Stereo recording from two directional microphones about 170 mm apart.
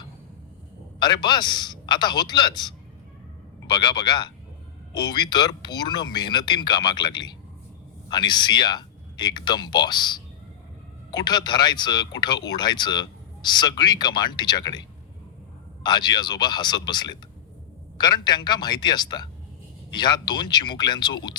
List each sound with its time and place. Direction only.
0.9 s speech: 25° left (ahead or behind)
15.8 s speech: 25° left (ahead or behind)